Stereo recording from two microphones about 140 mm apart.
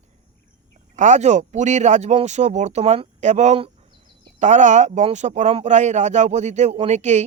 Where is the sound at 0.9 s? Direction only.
60° right (ahead or behind).